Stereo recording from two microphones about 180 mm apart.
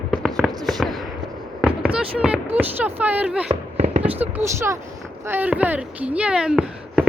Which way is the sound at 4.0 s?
10° right (ahead or behind).